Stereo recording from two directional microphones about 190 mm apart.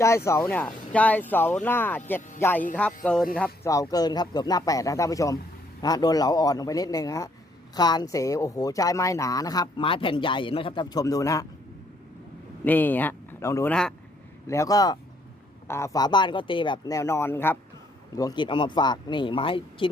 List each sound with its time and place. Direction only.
0.3 s speech: 10° left (ahead or behind)
3.7 s speech: 20° left (ahead or behind)
12.6 s speech: 10° left (ahead or behind); by 19.9 s 25° left (ahead or behind)